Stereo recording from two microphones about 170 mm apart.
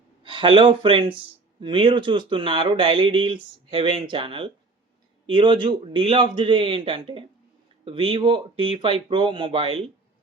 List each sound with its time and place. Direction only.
0.2 s speech: 30° right (ahead or behind)